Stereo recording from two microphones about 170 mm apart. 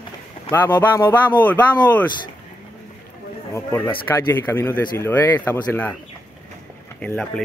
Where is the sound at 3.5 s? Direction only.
15° left (ahead or behind).